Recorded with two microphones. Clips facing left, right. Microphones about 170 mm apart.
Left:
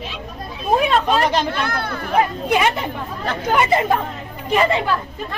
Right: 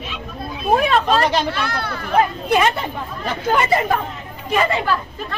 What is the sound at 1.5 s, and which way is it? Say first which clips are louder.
Speech: left 1 dB; 50° left (ahead or behind).